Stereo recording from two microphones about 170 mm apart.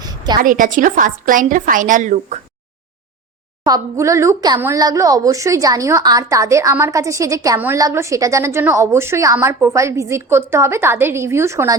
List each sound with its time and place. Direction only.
0.4 s a woman's voice: 50° right (ahead or behind)
3.6 s speech: 20° right (ahead or behind)